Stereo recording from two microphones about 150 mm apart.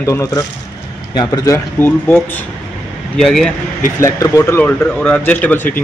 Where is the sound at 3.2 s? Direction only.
5° left (ahead or behind).